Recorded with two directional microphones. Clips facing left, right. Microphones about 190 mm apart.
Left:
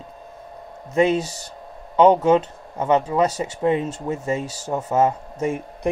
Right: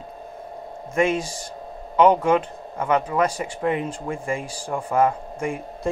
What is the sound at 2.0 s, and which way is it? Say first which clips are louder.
Speech: left 2 dB; 25° left (ahead or behind).